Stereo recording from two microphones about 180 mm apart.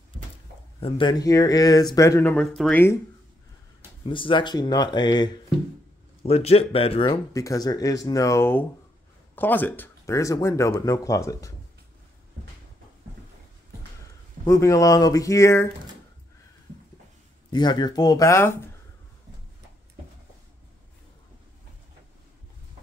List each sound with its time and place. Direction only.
0.7 s speech: 30° left (ahead or behind)
2.3 s speech: centre (ahead or behind)
4.0 s speech: 30° left (ahead or behind)
6.2 s speech: 35° left (ahead or behind)
7.3 s speech: 20° left (ahead or behind)
14.4 s speech: 15° left (ahead or behind)
17.5 s speech: 25° left (ahead or behind)